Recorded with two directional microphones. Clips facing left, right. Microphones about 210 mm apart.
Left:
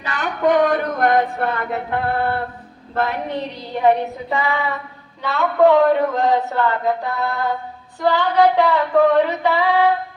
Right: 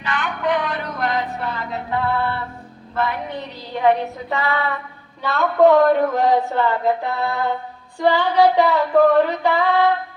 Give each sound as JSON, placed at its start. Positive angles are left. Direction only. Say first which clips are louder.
{"t": 0.0, "sound": "a sound", "louder": "left 4 dB", "side_deg": 40}
{"t": 2.9, "sound": "a woman's voice", "louder": "left 1 dB", "side_deg": 45}
{"t": 4.3, "sound": "female singing", "louder": "even", "side_deg": 15}
{"t": 7.2, "sound": "mantra", "louder": "even", "side_deg": -15}
{"t": 8.0, "sound": "female singing", "louder": "even", "side_deg": -10}